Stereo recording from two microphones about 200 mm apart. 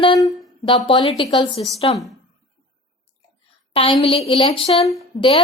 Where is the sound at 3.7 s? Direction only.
25° left (ahead or behind).